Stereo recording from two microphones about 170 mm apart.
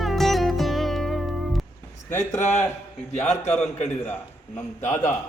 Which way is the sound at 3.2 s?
40° left (ahead or behind).